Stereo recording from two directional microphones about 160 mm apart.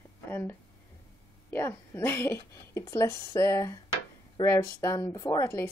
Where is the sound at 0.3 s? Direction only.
15° left (ahead or behind).